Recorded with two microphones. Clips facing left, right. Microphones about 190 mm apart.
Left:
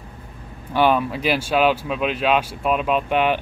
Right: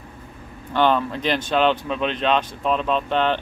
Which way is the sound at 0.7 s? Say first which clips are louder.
Left 1 dB; 10° left (ahead or behind).